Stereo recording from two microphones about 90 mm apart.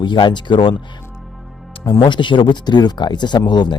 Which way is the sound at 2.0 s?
60° left (ahead or behind).